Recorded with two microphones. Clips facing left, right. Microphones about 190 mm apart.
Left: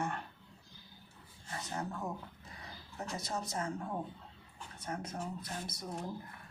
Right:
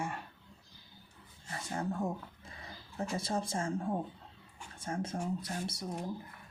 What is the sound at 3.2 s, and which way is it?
Speech, 30° right (ahead or behind).